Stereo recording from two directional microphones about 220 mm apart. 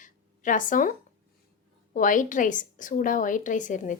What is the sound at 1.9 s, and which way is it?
A woman's voice, 35° left (ahead or behind).